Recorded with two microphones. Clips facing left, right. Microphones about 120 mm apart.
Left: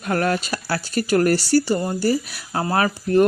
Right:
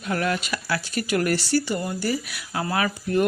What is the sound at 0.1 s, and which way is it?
Speech, 45° left (ahead or behind).